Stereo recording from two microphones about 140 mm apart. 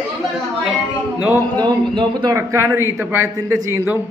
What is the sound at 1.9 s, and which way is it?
A man's voice, 30° right (ahead or behind).